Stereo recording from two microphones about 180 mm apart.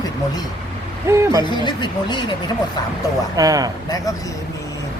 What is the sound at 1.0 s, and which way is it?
Speech, 15° right (ahead or behind).